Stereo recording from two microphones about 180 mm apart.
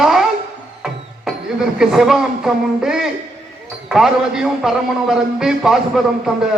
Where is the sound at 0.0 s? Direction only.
Centre (ahead or behind).